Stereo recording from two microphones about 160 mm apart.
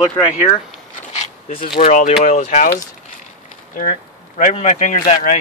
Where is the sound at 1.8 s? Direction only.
50° left (ahead or behind).